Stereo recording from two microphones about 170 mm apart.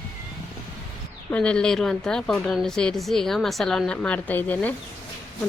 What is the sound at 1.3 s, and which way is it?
A woman's voice, 5° left (ahead or behind).